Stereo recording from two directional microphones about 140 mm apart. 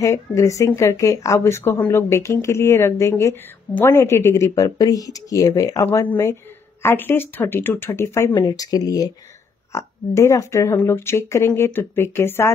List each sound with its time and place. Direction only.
0.0 s speech: 20° left (ahead or behind)